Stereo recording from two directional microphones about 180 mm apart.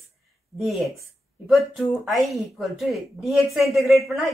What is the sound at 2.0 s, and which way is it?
A man's voice, centre (ahead or behind).